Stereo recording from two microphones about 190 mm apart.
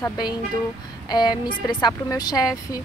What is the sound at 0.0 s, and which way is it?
Speech, 20° left (ahead or behind).